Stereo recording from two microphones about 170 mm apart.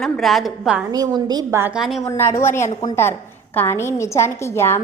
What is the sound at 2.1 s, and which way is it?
A woman's voice, 15° left (ahead or behind).